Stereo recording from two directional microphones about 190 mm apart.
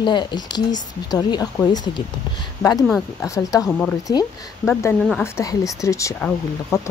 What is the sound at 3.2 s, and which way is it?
Speech, 15° left (ahead or behind).